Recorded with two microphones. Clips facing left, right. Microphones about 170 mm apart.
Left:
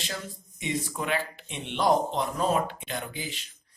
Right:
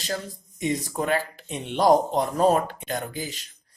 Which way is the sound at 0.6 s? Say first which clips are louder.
Right 5 dB; 40° right (ahead or behind).